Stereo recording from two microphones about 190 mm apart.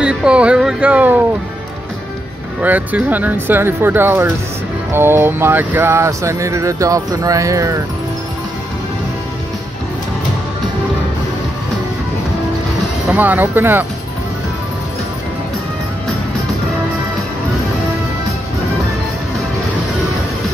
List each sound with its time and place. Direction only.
0.0 s music: 5° right (ahead or behind)
2.6 s speech: 10° right (ahead or behind)
13.1 s speech: 10° right (ahead or behind)